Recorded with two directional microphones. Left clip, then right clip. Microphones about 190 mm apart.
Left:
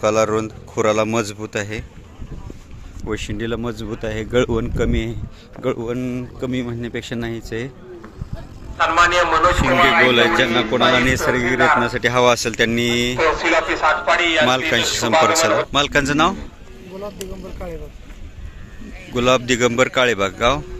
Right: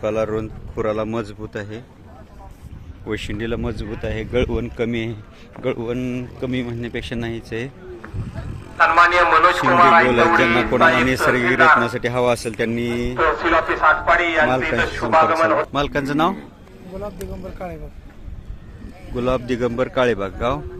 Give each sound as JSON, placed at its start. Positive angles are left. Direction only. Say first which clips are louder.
{"t": 0.0, "sound": "speech", "louder": "left 5 dB", "side_deg": 10}
{"t": 3.1, "sound": "speech", "louder": "left 1 dB", "side_deg": 5}
{"t": 8.8, "sound": "a man's voice", "louder": "right 2 dB", "side_deg": 70}
{"t": 9.6, "sound": "a man's voice", "louder": "right 4 dB", "side_deg": 35}
{"t": 10.4, "sound": "a man's voice", "louder": "right 1 dB", "side_deg": -10}
{"t": 11.4, "sound": "a man's voice", "louder": "right 3 dB", "side_deg": 65}
{"t": 11.8, "sound": "a man's voice", "louder": "left 3 dB", "side_deg": 0}
{"t": 13.1, "sound": "a man's voice", "louder": "right 2 dB", "side_deg": 60}
{"t": 14.5, "sound": "a man's voice", "louder": "left 2 dB", "side_deg": 5}
{"t": 14.8, "sound": "a man's voice", "louder": "even", "side_deg": 50}
{"t": 15.7, "sound": "a man's voice", "louder": "left 4 dB", "side_deg": 0}
{"t": 19.1, "sound": "a man's voice", "louder": "left 5 dB", "side_deg": 5}